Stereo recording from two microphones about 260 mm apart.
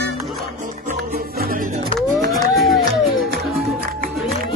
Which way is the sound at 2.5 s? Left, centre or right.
Centre.